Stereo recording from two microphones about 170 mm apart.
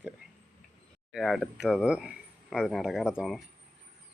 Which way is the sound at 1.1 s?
Centre (ahead or behind).